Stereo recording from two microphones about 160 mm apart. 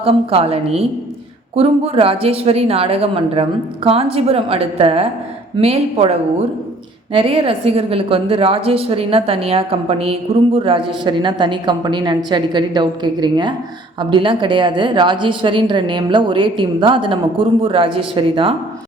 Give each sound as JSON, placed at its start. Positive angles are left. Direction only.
{"t": 0.0, "sound": "a woman's voice", "side_deg": -35}